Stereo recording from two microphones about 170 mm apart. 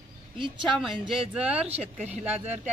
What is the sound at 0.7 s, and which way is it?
A man's voice, centre (ahead or behind).